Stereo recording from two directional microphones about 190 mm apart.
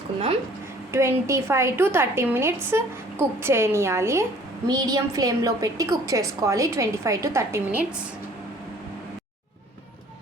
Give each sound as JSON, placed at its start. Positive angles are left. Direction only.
{"t": 0.9, "sound": "a woman's voice", "side_deg": -15}